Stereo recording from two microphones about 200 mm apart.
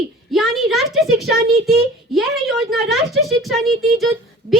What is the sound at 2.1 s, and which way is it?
Speech, centre (ahead or behind).